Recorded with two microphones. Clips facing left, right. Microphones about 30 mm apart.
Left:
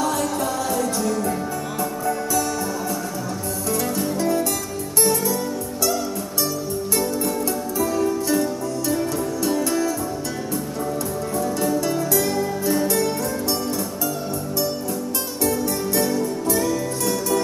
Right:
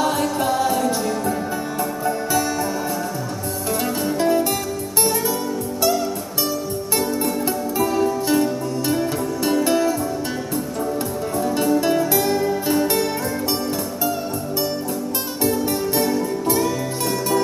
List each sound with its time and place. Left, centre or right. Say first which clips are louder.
0.0 s music: right 2 dB; right
4.2 s music: right 4 dB; right
7.0 s music: right 2 dB; right
11.8 s music: right 3 dB; right
15.4 s music: right 2 dB; right